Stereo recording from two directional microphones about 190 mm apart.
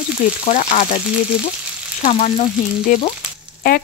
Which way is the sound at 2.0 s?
35° left (ahead or behind).